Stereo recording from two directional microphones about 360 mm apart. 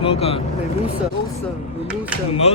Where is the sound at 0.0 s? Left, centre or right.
Centre.